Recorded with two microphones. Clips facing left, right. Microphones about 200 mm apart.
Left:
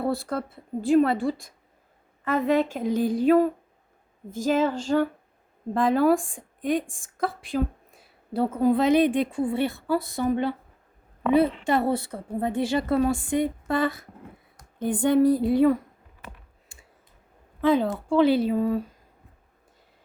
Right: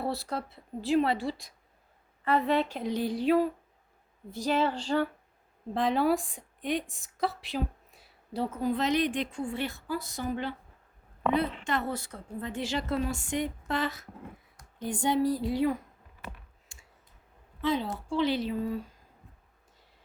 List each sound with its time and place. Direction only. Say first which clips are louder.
0.0 s a woman's voice: left 6 dB; 50° left (ahead or behind)
11.6 s a woman's voice: left 8 dB; 60° left (ahead or behind)
17.6 s a woman's voice: left 8 dB; 55° left (ahead or behind)